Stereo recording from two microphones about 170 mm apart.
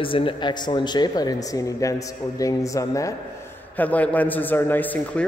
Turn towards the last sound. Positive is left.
turn(degrees=10)  # may be behind; listen again after turning